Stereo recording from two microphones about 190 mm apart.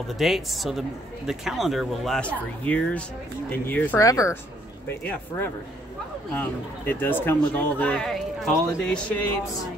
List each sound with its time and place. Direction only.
0.2 s speech: centre (ahead or behind)
6.9 s speech: 10° left (ahead or behind)